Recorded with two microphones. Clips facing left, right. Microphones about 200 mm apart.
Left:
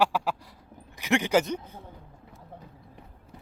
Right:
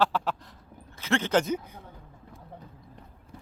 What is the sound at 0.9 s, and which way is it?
Speech, 15° left (ahead or behind).